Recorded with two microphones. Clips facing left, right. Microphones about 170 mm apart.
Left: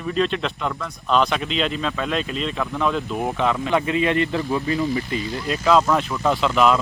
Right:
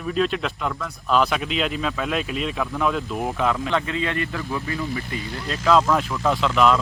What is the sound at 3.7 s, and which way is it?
Speech, 20° left (ahead or behind).